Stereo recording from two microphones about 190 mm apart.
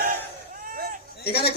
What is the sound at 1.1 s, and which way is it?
Speech, 55° left (ahead or behind).